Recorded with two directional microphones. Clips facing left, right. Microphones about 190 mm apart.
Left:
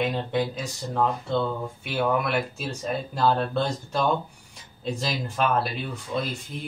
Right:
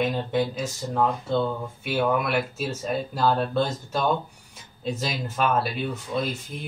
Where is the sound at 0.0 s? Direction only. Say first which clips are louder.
Right 1 dB; centre (ahead or behind).